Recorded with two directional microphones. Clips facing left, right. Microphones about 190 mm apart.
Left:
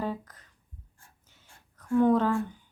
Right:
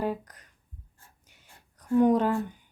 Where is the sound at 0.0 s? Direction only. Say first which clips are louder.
Right 3 dB; 15° right (ahead or behind).